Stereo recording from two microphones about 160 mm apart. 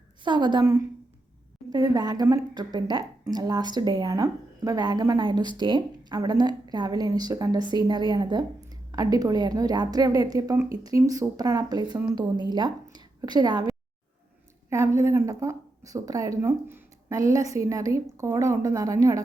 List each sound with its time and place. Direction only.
0.3 s speech: 30° right (ahead or behind)